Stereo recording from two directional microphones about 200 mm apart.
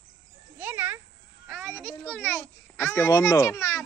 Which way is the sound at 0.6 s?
10° right (ahead or behind).